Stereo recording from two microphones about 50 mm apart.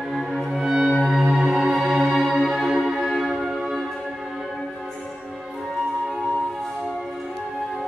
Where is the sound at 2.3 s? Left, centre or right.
Centre.